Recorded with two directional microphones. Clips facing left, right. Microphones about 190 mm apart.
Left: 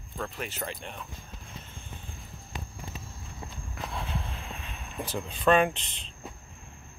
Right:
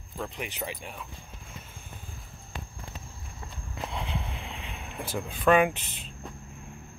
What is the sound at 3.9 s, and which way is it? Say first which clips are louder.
Vehicle: even; 15° right (ahead or behind).